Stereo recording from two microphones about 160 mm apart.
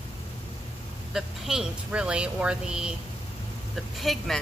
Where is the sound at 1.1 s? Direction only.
5° right (ahead or behind).